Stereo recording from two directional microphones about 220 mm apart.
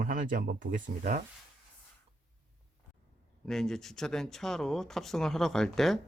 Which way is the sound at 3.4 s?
Centre (ahead or behind).